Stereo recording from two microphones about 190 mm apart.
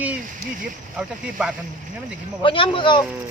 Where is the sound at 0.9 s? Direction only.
5° right (ahead or behind).